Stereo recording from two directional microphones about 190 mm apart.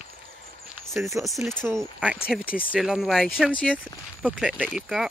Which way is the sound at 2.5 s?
5° left (ahead or behind).